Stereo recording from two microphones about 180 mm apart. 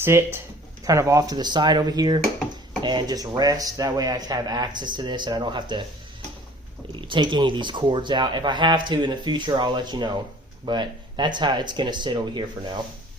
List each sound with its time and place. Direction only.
0.0 s speech: 15° right (ahead or behind)
6.9 s speech: 25° right (ahead or behind)